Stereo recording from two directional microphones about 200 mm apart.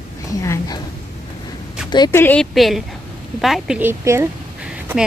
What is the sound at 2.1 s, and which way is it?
Speech, 5° left (ahead or behind).